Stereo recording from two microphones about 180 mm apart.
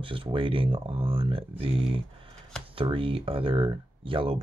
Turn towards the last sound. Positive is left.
turn(degrees=-30)  # may be behind; listen again after turning